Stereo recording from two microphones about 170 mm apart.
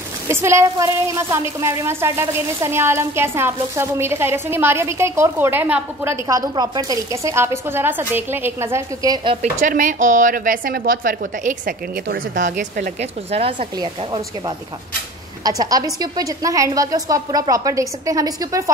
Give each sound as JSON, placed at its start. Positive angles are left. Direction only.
{"t": 0.3, "sound": "a woman's voice", "side_deg": -15}
{"t": 9.4, "sound": "a woman's voice", "side_deg": -50}
{"t": 13.4, "sound": "a woman's voice", "side_deg": -30}
{"t": 15.4, "sound": "a woman's voice", "side_deg": -20}